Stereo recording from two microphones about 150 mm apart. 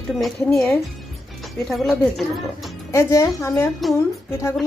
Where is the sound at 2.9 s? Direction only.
20° left (ahead or behind).